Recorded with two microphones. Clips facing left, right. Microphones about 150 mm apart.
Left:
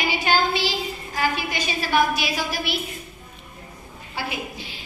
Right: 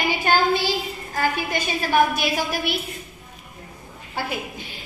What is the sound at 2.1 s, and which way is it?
Child singing, 50° right (ahead or behind).